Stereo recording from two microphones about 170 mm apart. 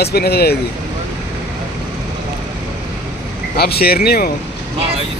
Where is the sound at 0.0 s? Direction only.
70° left (ahead or behind).